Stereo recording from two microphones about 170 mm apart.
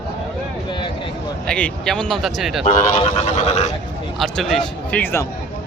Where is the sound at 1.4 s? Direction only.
5° left (ahead or behind).